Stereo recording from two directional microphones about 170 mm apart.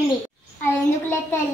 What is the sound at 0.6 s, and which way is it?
Speech, 15° left (ahead or behind).